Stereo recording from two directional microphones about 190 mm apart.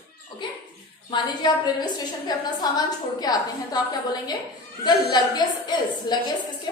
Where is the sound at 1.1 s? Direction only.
20° left (ahead or behind).